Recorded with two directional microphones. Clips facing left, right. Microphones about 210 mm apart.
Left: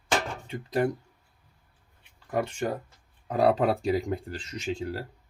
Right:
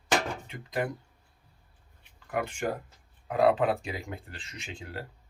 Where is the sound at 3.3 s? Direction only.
35° left (ahead or behind).